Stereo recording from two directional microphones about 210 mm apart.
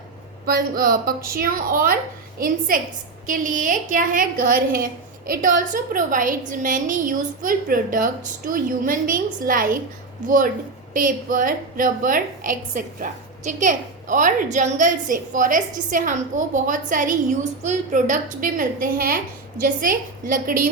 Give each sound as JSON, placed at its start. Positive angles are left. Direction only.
{"t": 0.4, "sound": "a woman's voice", "side_deg": -45}